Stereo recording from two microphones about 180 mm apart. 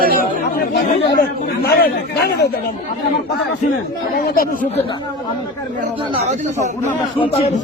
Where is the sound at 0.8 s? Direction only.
55° left (ahead or behind).